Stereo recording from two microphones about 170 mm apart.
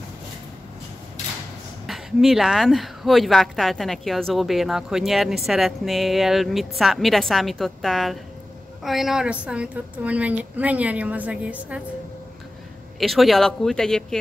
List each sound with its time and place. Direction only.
1.9 s a woman's voice: centre (ahead or behind)
13.0 s speech: centre (ahead or behind)